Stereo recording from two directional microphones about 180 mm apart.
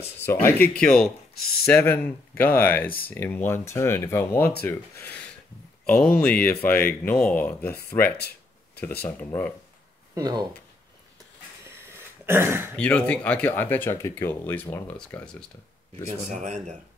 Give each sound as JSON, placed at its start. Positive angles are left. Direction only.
{"t": 0.2, "sound": "speech", "side_deg": 15}
{"t": 10.1, "sound": "speech", "side_deg": -20}
{"t": 11.6, "sound": "throat clearing", "side_deg": -15}
{"t": 12.7, "sound": "speech", "side_deg": 5}
{"t": 16.3, "sound": "speech", "side_deg": -40}